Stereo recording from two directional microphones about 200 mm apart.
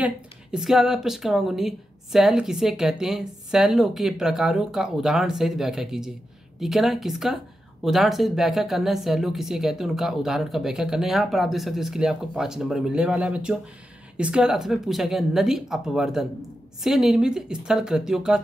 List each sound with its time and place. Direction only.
0.0 s a woman's voice: 5° right (ahead or behind)